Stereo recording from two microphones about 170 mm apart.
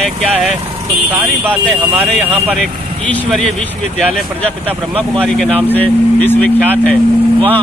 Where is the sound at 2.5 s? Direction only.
5° left (ahead or behind).